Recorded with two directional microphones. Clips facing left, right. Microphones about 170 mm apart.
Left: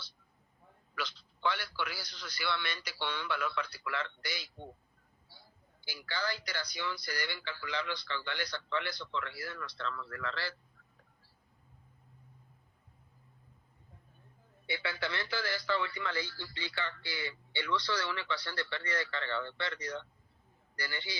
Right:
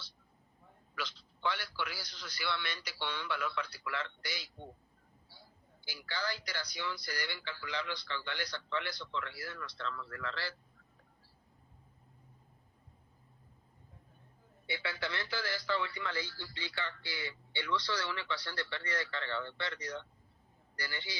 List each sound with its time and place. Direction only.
0.9 s speech: 65° left (ahead or behind)
5.8 s speech: 65° left (ahead or behind)
14.7 s speech: 65° left (ahead or behind)